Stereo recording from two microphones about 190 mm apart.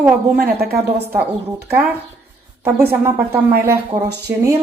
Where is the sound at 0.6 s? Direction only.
55° right (ahead or behind).